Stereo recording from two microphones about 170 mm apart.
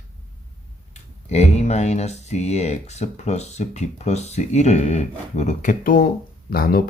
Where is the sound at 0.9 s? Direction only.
40° left (ahead or behind); by 6.8 s 60° left (ahead or behind).